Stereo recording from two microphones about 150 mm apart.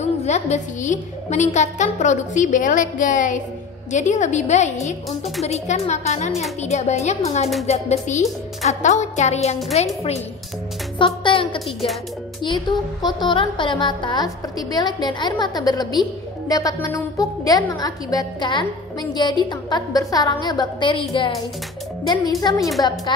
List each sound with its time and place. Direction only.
0.0 s a woman's voice: 50° left (ahead or behind)
11.0 s speech: 35° left (ahead or behind)
11.6 s speech: centre (ahead or behind)
12.4 s a woman's voice: 30° left (ahead or behind)